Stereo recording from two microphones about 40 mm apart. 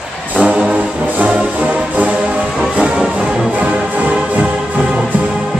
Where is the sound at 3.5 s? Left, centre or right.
Right.